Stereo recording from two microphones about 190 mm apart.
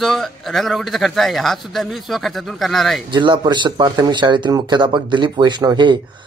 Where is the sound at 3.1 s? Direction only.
25° right (ahead or behind).